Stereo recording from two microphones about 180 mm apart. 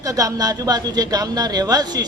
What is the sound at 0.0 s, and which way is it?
A woman's voice, 20° right (ahead or behind).